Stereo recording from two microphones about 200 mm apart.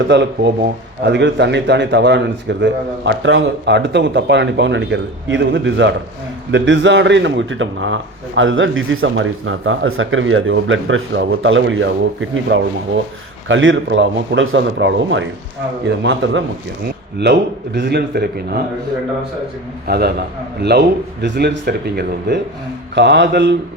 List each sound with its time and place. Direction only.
0.1 s a man's voice: 60° right (ahead or behind)
19.9 s a man's voice: 55° right (ahead or behind)